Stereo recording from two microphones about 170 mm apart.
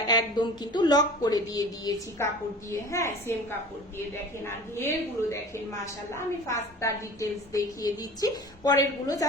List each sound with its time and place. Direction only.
0.1 s a woman's voice: 25° left (ahead or behind)
4.4 s a woman's voice: 15° left (ahead or behind)